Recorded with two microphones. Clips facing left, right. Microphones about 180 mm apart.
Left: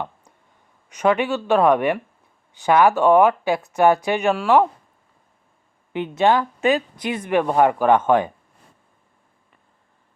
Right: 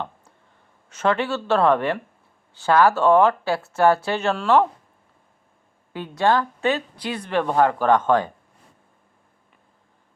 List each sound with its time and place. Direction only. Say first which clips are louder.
0.9 s speech: left 3 dB; 15° left (ahead or behind)
5.9 s speech: left 2 dB; 20° left (ahead or behind)